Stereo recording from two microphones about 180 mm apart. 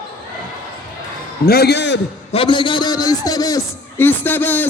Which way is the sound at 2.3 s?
30° left (ahead or behind).